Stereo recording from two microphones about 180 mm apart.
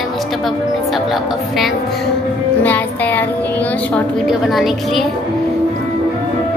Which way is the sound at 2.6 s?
10° left (ahead or behind).